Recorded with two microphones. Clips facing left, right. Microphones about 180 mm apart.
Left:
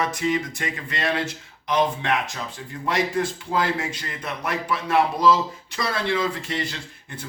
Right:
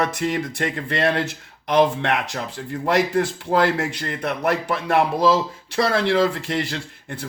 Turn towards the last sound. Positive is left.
turn(degrees=-65)  # may be behind; listen again after turning